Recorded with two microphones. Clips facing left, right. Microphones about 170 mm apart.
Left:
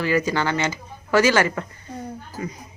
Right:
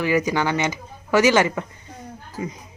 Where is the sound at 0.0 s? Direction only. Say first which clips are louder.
Right 1 dB; 15° right (ahead or behind).